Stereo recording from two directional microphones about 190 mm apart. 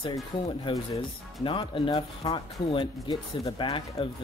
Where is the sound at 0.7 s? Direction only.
25° left (ahead or behind).